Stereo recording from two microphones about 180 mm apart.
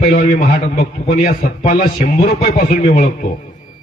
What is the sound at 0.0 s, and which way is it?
A man's voice, 50° left (ahead or behind).